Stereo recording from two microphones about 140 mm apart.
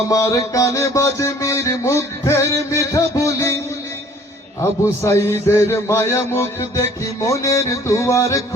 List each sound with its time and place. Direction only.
0.1 s mantra: 25° left (ahead or behind)
5.0 s mantra: 15° left (ahead or behind)